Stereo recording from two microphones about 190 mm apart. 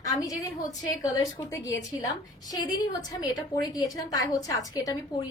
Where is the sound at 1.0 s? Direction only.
20° left (ahead or behind).